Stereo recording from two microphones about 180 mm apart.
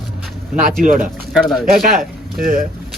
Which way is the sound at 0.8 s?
50° right (ahead or behind).